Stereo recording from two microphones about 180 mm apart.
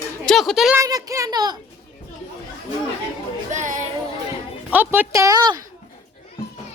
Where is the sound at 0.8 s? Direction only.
20° right (ahead or behind).